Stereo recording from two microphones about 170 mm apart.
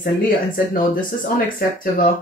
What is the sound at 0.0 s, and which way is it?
Speech, 55° left (ahead or behind).